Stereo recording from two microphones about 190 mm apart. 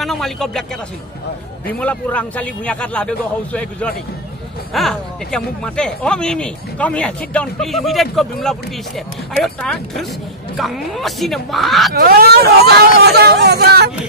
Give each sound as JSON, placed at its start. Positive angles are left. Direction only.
{"t": 0.0, "sound": "speech", "side_deg": 0}
{"t": 1.7, "sound": "a man's voice", "side_deg": 5}
{"t": 11.9, "sound": "speech", "side_deg": -55}